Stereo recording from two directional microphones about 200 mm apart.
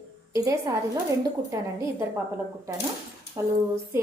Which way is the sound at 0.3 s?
15° right (ahead or behind).